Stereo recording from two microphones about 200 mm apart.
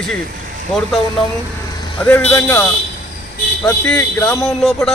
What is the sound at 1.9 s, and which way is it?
Speech, 10° left (ahead or behind).